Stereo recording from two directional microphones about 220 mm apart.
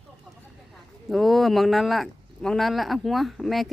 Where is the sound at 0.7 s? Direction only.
Centre (ahead or behind).